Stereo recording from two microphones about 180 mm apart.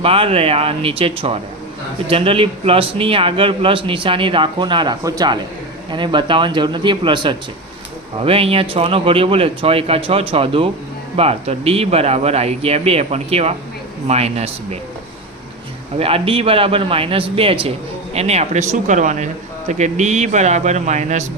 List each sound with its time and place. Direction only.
0.0 s speech: 30° right (ahead or behind)
16.0 s speech: 30° right (ahead or behind)